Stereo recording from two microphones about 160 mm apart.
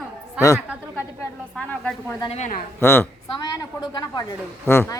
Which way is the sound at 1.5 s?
5° left (ahead or behind).